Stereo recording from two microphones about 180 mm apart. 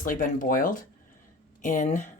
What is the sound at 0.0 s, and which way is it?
Speech, 45° left (ahead or behind).